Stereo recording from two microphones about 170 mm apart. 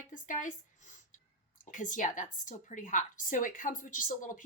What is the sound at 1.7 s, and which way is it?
A woman's voice, 50° left (ahead or behind).